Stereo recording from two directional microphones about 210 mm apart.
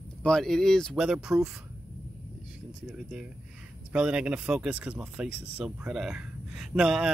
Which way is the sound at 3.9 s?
5° right (ahead or behind).